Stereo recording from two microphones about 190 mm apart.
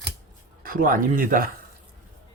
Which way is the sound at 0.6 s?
50° right (ahead or behind).